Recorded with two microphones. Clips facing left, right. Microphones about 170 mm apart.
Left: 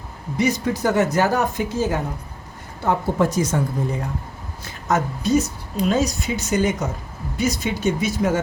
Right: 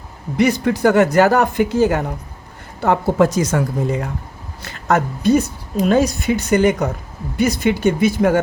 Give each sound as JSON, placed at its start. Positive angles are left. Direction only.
{"t": 0.3, "sound": "a woman's voice", "side_deg": -65}
{"t": 4.6, "sound": "speech", "side_deg": -70}